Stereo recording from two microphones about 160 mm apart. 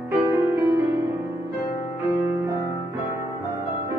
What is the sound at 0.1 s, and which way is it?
Music, 15° right (ahead or behind).